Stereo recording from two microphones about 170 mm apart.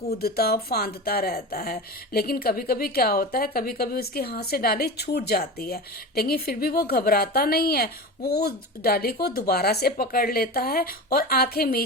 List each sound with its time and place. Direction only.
0.1 s speech: 65° left (ahead or behind)